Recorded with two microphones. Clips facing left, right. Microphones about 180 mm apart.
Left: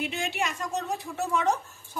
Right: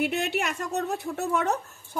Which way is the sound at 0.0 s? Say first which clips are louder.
Right 4 dB; 65° right (ahead or behind).